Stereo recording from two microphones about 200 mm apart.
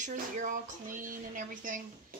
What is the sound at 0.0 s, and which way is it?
Speech, 40° right (ahead or behind).